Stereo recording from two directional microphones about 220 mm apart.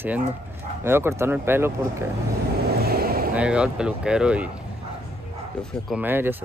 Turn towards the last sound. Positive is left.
turn(degrees=-10)  # may be behind; listen again after turning